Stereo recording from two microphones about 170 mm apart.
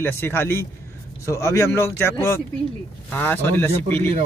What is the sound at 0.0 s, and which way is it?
Speech, 10° left (ahead or behind).